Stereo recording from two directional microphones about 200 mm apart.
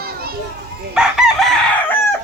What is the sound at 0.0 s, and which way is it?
Children playing, 50° right (ahead or behind).